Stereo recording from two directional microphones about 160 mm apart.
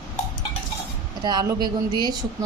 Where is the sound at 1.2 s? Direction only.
25° right (ahead or behind).